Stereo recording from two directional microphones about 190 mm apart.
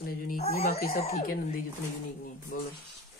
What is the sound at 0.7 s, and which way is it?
Speech, 55° left (ahead or behind).